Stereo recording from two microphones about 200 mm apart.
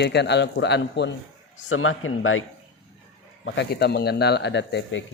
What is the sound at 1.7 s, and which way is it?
Speech, 90° left.